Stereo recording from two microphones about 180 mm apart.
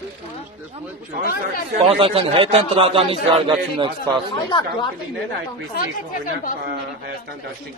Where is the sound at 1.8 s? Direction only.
30° right (ahead or behind).